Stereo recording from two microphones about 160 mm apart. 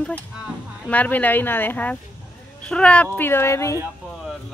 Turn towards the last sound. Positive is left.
turn(degrees=20)  # may be behind; listen again after turning